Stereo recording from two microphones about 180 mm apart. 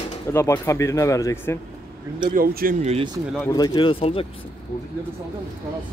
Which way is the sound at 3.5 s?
25° left (ahead or behind).